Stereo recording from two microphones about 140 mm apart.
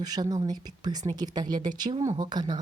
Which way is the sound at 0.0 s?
30° right (ahead or behind).